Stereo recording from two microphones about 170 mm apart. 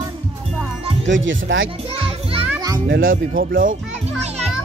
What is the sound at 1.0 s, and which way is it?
Speech, 90° right.